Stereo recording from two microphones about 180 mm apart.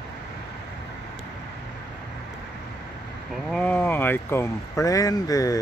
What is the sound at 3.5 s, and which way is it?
Speech, 5° left (ahead or behind).